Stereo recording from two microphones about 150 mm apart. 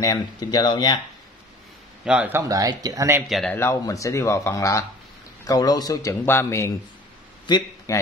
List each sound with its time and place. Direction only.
0.0 s speech: 25° left (ahead or behind)
2.0 s speech: 10° right (ahead or behind)
2.4 s speech: 25° right (ahead or behind)
3.3 s a man's voice: centre (ahead or behind)
3.5 s a man's voice: 20° left (ahead or behind)